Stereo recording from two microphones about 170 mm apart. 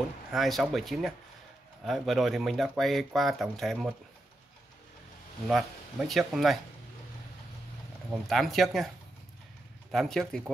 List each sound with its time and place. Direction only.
0.3 s speech: centre (ahead or behind)
5.5 s speech: centre (ahead or behind)
8.1 s speech: centre (ahead or behind)